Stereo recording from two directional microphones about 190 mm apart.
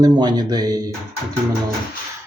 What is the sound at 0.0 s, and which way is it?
Speech, 20° right (ahead or behind).